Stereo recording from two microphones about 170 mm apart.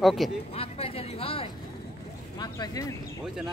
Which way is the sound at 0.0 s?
Centre (ahead or behind).